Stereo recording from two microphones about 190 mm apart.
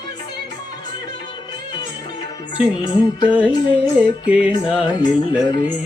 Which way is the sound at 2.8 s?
20° left (ahead or behind).